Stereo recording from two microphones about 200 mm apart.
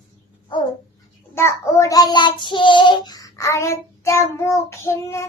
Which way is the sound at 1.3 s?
15° left (ahead or behind).